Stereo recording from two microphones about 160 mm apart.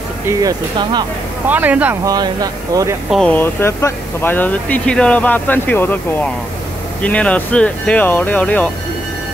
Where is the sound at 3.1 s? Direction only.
5° left (ahead or behind).